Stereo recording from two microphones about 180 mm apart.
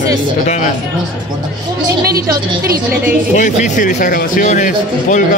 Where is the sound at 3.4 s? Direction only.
45° left (ahead or behind).